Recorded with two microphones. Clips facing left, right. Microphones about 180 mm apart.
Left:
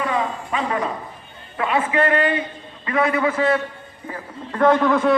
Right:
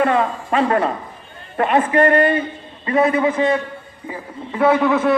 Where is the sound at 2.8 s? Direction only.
25° right (ahead or behind).